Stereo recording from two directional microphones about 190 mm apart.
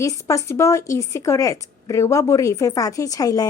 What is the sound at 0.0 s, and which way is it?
A woman's voice, 15° left (ahead or behind).